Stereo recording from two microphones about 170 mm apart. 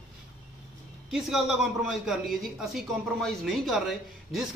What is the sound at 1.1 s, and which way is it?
A man's voice, centre (ahead or behind).